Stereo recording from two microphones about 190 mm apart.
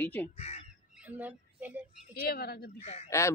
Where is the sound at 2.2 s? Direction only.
55° left (ahead or behind).